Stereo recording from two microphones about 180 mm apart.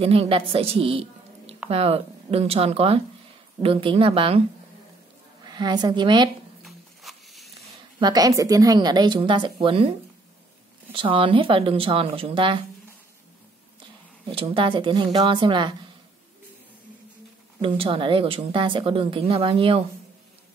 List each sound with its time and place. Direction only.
0.0 s a woman's voice: 30° right (ahead or behind)
5.5 s a woman's voice: 25° right (ahead or behind)
6.6 s a sound: centre (ahead or behind)
8.0 s a woman's voice: 20° right (ahead or behind)
10.9 s a woman's voice: 30° right (ahead or behind)
14.3 s a woman's voice: 30° right (ahead or behind)
17.6 s a woman's voice: 30° right (ahead or behind)